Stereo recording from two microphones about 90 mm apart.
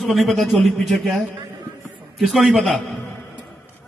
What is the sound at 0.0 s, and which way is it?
A man's voice, centre (ahead or behind).